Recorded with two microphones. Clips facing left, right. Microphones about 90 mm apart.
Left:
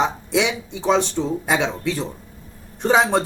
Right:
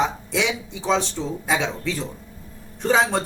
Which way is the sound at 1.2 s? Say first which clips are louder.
Left 5 dB; 30° left (ahead or behind).